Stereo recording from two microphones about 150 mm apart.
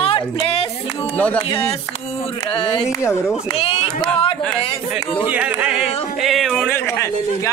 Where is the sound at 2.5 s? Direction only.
35° left (ahead or behind).